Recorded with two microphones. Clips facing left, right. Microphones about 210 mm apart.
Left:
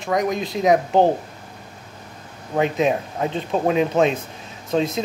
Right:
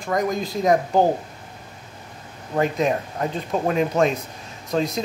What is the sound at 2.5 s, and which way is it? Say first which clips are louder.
Speech: left 2 dB; 20° left (ahead or behind).